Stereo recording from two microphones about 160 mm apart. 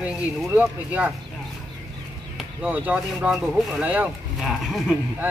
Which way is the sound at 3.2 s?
5° right (ahead or behind).